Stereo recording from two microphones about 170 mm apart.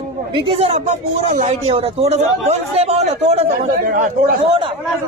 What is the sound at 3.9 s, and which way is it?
Speech, 55° right (ahead or behind).